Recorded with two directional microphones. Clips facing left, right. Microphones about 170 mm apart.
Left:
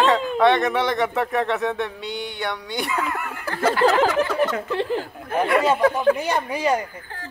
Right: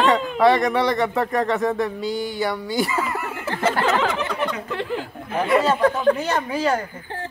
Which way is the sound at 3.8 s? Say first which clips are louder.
Left 5 dB; 35° left (ahead or behind).